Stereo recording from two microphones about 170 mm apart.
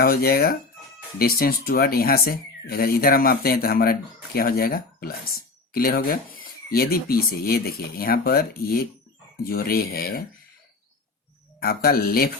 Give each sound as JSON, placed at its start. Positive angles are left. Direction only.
{"t": 0.0, "sound": "speech", "side_deg": 60}
{"t": 11.6, "sound": "speech", "side_deg": 60}